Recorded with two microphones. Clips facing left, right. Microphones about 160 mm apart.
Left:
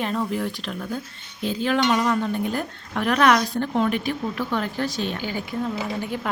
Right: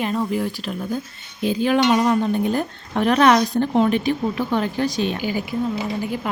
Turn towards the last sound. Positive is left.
turn(degrees=-5)  # may be behind; listen again after turning